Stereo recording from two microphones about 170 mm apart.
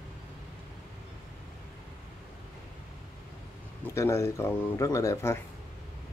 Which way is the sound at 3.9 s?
15° left (ahead or behind).